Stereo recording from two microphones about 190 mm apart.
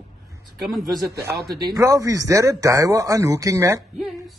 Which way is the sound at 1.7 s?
15° right (ahead or behind).